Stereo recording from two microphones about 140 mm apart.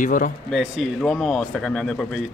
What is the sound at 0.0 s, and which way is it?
Speech, 70° left (ahead or behind).